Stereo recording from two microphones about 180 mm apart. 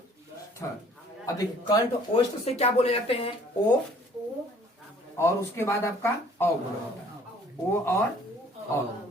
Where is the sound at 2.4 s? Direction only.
35° left (ahead or behind).